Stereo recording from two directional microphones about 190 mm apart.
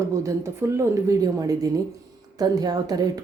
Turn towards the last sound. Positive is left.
turn(degrees=-20)  # may be behind; listen again after turning